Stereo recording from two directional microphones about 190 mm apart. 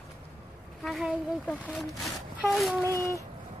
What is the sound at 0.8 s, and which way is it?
Speech, centre (ahead or behind).